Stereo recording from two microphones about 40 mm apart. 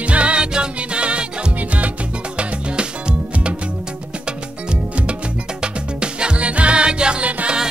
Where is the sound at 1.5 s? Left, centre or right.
Right.